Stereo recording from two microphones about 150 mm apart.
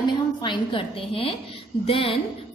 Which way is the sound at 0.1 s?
30° left (ahead or behind).